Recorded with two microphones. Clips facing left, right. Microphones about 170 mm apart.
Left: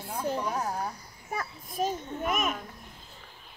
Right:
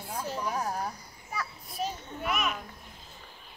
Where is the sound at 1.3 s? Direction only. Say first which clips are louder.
Left 3 dB; 45° left (ahead or behind).